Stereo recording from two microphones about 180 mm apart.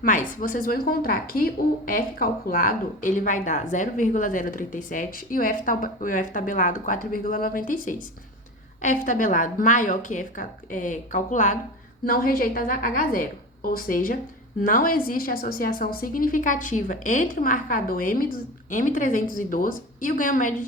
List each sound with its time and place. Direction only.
0.0 s speech: 45° left (ahead or behind)